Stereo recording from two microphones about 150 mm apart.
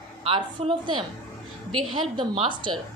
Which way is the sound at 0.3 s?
35° right (ahead or behind).